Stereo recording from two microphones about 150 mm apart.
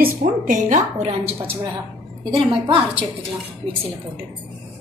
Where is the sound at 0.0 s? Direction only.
60° right (ahead or behind); by 2.8 s 35° right (ahead or behind).